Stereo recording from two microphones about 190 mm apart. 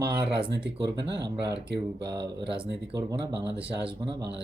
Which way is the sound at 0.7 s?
65° right (ahead or behind).